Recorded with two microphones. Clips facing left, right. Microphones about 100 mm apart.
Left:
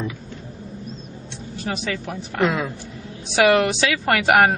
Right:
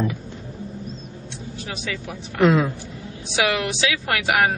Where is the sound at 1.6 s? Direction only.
55° left (ahead or behind).